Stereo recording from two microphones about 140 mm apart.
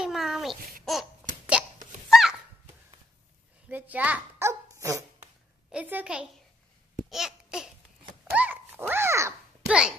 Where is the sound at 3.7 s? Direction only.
10° right (ahead or behind).